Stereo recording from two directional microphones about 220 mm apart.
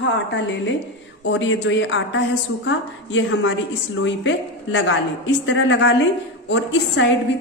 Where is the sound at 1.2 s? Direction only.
55° left (ahead or behind).